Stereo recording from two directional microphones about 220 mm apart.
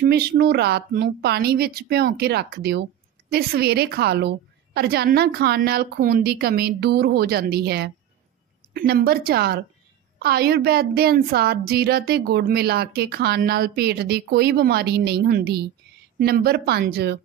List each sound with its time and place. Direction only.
0.0 s a woman's voice: 45° right (ahead or behind)